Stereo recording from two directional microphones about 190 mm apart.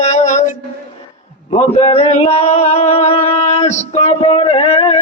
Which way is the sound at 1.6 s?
30° left (ahead or behind).